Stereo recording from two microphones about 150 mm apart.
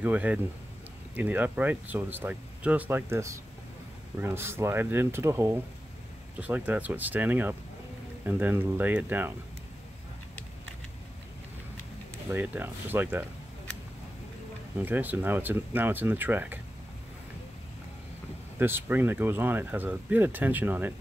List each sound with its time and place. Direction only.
0.0 s speech: 10° right (ahead or behind)
12.3 s speech: 15° right (ahead or behind)
14.8 s speech: 10° right (ahead or behind)
18.6 s speech: 15° right (ahead or behind)